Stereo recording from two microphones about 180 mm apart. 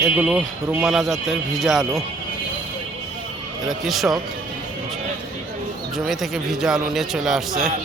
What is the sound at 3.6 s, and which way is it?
Speech, centre (ahead or behind).